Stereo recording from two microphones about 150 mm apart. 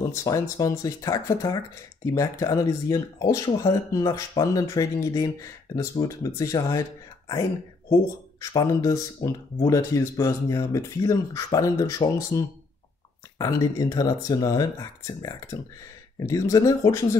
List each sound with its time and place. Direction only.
0.1 s speech: 20° left (ahead or behind)
7.9 s speech: 25° left (ahead or behind)